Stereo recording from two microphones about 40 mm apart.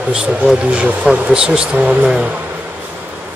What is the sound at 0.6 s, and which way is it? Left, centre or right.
Speech, right.